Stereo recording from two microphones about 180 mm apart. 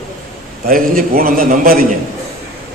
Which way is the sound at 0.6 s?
50° right (ahead or behind).